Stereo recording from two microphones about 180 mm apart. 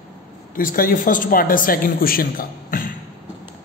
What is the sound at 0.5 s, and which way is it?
A man's voice, 50° left (ahead or behind).